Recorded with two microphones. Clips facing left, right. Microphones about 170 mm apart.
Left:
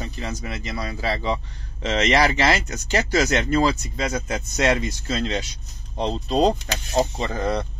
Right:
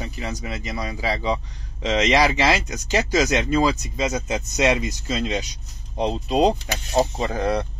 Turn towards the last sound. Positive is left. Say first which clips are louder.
# right 2 dB
turn(degrees=-10)  # may be behind; listen again after turning